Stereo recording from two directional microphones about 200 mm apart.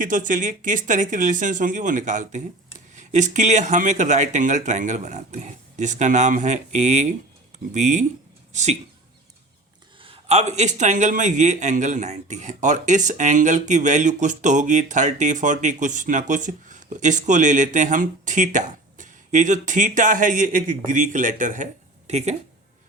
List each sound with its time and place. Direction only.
0.0 s a man's voice: 40° right (ahead or behind)
10.0 s a man's voice: 30° right (ahead or behind)